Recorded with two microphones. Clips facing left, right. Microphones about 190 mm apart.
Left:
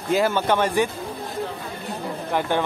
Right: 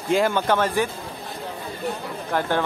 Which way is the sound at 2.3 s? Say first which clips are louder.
Even; 15° left (ahead or behind).